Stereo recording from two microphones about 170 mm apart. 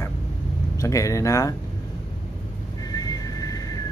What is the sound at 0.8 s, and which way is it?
Speech, 20° left (ahead or behind).